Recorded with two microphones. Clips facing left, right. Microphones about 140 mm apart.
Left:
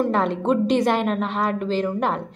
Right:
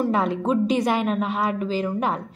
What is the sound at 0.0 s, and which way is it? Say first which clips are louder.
A woman's voice: left 1 dB; 5° right (ahead or behind).